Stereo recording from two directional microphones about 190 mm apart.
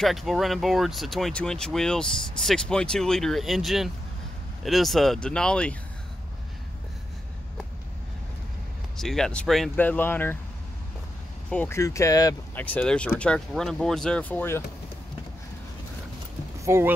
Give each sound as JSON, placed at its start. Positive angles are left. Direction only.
{"t": 0.0, "sound": "speech", "side_deg": 0}
{"t": 8.9, "sound": "speech", "side_deg": 0}
{"t": 11.5, "sound": "speech", "side_deg": 10}
{"t": 12.6, "sound": "speech", "side_deg": 5}
{"t": 16.6, "sound": "speech", "side_deg": -15}